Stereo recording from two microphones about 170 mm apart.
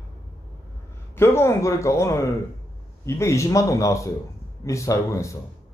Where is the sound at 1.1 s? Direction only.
15° left (ahead or behind).